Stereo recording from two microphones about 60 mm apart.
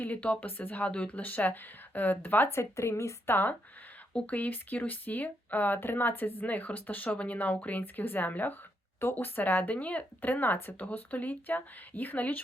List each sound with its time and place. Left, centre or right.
0.0 s speech: left
2.5 s speech: left
3.2 s speech: left